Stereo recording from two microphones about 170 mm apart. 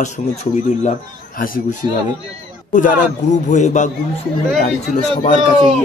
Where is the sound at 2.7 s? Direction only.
50° left (ahead or behind).